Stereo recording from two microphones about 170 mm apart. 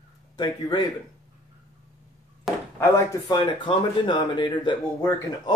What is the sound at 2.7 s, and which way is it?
Speech, 15° left (ahead or behind).